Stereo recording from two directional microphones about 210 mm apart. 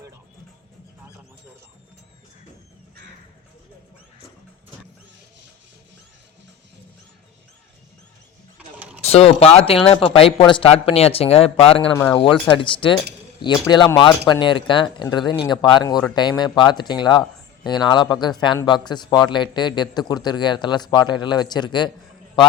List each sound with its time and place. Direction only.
8.5 s mechanisms: 5° right (ahead or behind)
9.0 s speech: 30° left (ahead or behind)